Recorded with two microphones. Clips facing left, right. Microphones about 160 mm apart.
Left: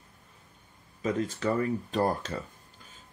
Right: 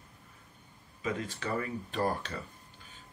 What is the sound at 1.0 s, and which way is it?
Speech, 40° left (ahead or behind).